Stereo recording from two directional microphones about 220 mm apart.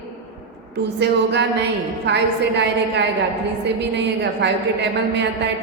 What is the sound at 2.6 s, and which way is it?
A woman's voice, 50° right (ahead or behind).